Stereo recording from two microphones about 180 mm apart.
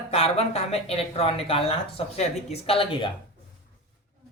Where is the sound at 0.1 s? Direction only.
35° left (ahead or behind).